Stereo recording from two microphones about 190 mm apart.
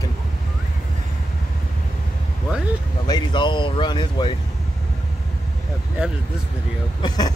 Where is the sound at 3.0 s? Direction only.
25° left (ahead or behind).